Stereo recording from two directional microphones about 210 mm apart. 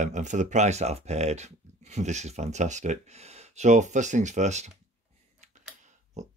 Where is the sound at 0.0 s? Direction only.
35° right (ahead or behind).